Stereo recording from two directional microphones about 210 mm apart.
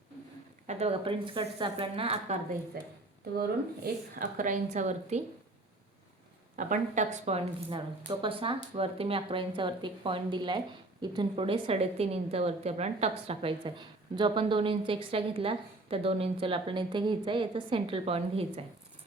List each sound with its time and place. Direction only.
0.7 s a woman's voice: 30° right (ahead or behind)
2.8 s speech: 45° right (ahead or behind)
4.2 s speech: 40° right (ahead or behind)
6.6 s a woman's voice: 35° right (ahead or behind)